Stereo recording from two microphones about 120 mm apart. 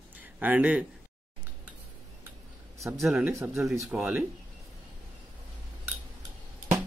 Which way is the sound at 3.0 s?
Centre (ahead or behind).